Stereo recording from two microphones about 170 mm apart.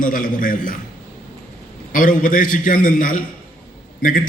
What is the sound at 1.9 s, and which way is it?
A man's voice, 50° left (ahead or behind).